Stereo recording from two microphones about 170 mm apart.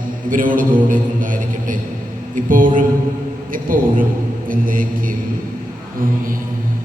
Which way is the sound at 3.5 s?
55° right (ahead or behind).